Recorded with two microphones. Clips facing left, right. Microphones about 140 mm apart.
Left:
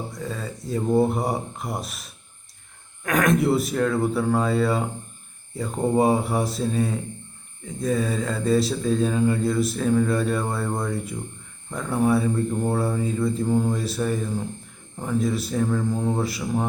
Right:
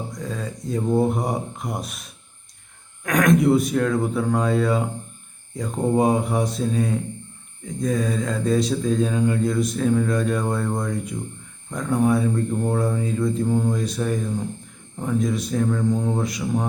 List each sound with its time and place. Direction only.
0.1 s speech: centre (ahead or behind)